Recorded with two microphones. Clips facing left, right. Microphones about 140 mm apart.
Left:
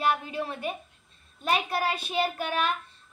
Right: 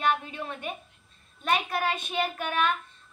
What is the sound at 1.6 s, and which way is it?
A woman's voice, 30° left (ahead or behind).